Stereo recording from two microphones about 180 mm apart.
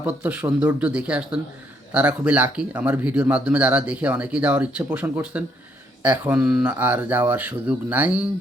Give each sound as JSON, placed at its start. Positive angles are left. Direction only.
{"t": 0.0, "sound": "speech", "side_deg": -10}